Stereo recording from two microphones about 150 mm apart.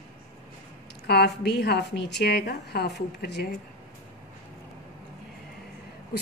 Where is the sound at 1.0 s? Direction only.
90° left.